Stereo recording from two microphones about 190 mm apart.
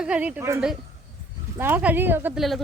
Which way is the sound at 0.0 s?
5° right (ahead or behind).